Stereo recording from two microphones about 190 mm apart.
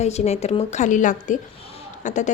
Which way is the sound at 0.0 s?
35° left (ahead or behind).